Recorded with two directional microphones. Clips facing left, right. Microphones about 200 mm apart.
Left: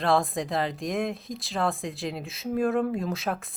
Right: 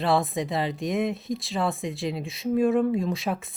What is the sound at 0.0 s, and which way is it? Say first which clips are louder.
A woman's voice: right 1 dB; centre (ahead or behind).